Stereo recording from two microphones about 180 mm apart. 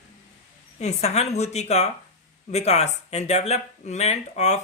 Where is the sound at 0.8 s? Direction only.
35° left (ahead or behind).